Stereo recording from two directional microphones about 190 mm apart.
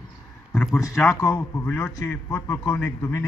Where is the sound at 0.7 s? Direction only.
15° left (ahead or behind).